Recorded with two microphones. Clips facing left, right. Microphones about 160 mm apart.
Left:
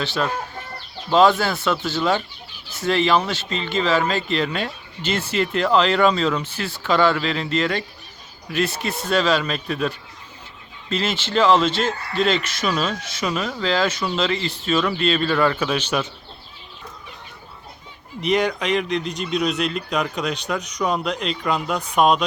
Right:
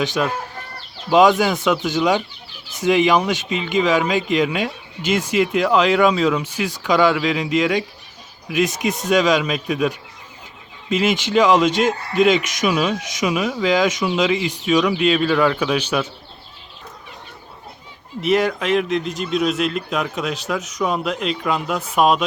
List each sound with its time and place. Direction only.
0.0 s speech: 15° right (ahead or behind)
18.2 s a man's voice: centre (ahead or behind)